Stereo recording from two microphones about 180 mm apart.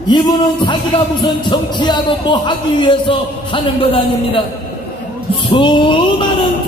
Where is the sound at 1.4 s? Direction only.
25° left (ahead or behind).